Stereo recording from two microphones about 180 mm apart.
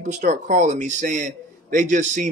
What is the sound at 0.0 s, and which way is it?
Speech, 45° right (ahead or behind).